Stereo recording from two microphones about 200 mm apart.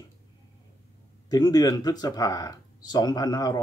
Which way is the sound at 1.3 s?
20° left (ahead or behind).